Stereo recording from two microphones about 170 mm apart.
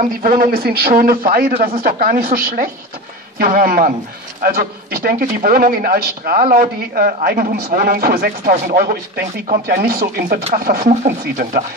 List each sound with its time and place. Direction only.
0.0 s a man's voice: 60° right (ahead or behind)